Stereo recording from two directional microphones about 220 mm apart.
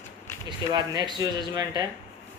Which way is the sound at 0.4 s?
20° right (ahead or behind).